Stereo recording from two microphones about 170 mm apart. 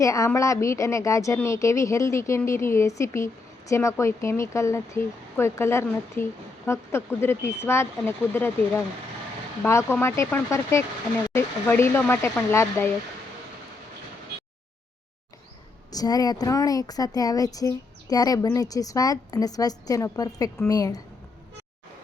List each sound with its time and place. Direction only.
0.0 s a woman's voice: 20° left (ahead or behind)
15.9 s speech: 20° left (ahead or behind)